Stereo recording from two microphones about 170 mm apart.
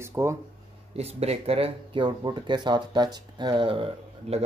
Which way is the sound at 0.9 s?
35° right (ahead or behind).